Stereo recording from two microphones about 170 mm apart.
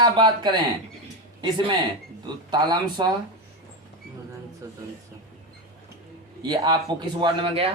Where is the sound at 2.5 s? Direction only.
25° right (ahead or behind).